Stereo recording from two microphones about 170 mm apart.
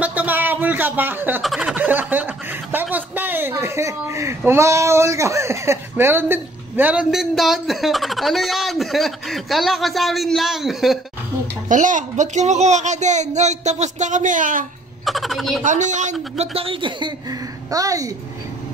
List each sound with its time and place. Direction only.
0.0 s a sound: 10° right (ahead or behind)
1.4 s a sound: centre (ahead or behind); by 4.4 s 15° right (ahead or behind)
4.5 s speech: 15° right (ahead or behind); by 11.0 s centre (ahead or behind)
11.7 s speech: 50° right (ahead or behind)
15.0 s speech: centre (ahead or behind)
15.6 s a man's voice: 45° right (ahead or behind); by 18.1 s 20° right (ahead or behind)